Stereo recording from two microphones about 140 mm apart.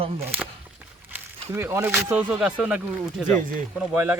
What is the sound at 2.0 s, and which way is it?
Speech, 15° right (ahead or behind).